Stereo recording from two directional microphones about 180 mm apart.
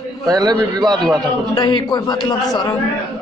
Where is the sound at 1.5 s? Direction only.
25° left (ahead or behind).